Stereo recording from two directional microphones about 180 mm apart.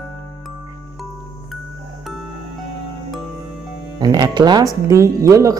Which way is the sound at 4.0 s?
20° right (ahead or behind).